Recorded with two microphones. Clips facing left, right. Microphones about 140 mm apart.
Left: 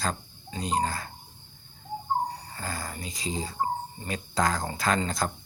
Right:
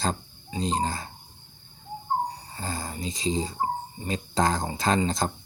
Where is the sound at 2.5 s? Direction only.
25° right (ahead or behind).